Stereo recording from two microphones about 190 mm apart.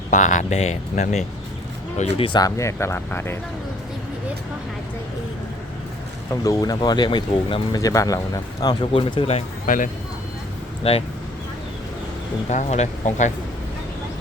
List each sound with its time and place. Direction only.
0.1 s speech: 40° left (ahead or behind); by 3.3 s 10° left (ahead or behind)
6.3 s speech: 15° left (ahead or behind); by 9.9 s 45° left (ahead or behind)
10.8 s speech: 30° left (ahead or behind)
12.5 s speech: 35° left (ahead or behind)